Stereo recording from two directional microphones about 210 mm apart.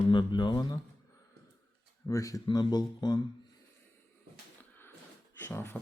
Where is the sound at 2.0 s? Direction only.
15° left (ahead or behind).